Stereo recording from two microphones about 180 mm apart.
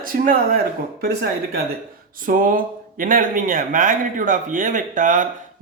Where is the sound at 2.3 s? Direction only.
50° right (ahead or behind).